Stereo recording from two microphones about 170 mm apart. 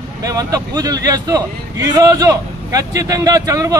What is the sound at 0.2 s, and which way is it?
Speech, 20° right (ahead or behind).